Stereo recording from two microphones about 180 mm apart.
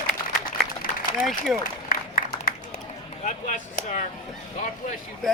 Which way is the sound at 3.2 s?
45° left (ahead or behind).